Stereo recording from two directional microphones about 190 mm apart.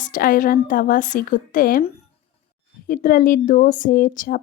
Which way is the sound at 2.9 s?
45° left (ahead or behind).